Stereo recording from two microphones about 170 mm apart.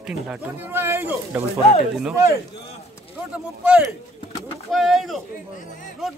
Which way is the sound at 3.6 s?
5° right (ahead or behind).